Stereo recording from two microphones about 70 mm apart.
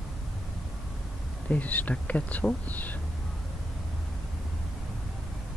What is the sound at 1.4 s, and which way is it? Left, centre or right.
Speech, left.